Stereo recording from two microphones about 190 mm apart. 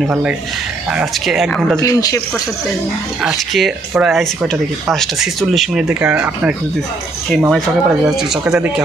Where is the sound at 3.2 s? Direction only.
Centre (ahead or behind).